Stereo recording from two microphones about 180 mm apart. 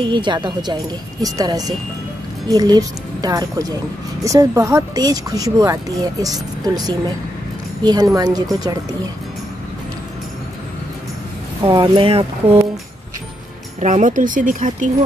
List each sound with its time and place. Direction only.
0.1 s speech: 25° right (ahead or behind)
11.6 s speech: 25° right (ahead or behind)
13.7 s speech: 45° right (ahead or behind)